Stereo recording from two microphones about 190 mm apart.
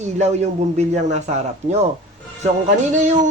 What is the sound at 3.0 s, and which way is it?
Speech, 40° right (ahead or behind).